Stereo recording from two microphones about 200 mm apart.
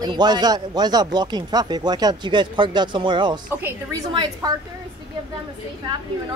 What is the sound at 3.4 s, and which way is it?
Speech, 10° right (ahead or behind).